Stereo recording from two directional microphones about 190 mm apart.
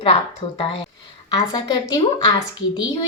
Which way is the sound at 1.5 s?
20° left (ahead or behind).